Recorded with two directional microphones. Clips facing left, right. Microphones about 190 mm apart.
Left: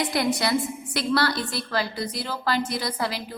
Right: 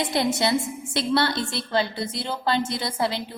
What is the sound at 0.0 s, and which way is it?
A woman's voice, 25° right (ahead or behind).